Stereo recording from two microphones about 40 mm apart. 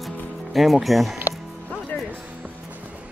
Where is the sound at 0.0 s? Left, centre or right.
Centre.